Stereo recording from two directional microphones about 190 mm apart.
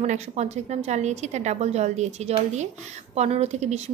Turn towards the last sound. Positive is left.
turn(degrees=-35)  # may be behind; listen again after turning